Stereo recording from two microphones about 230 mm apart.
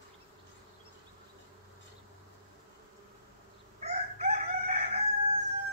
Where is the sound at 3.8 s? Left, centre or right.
Right.